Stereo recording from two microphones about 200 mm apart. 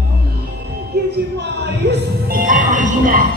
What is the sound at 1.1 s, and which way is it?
Music, 55° right (ahead or behind).